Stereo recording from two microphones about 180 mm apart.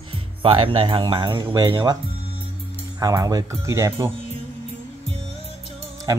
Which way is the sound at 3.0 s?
20° right (ahead or behind).